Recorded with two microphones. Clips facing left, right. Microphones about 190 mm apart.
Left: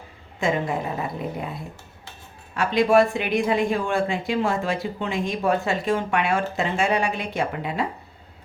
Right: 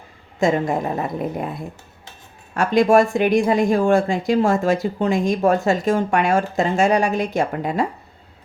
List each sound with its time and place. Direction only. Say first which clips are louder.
0.3 s speech: right 5 dB; 45° right (ahead or behind)
2.6 s speech: right 3 dB; 45° right (ahead or behind)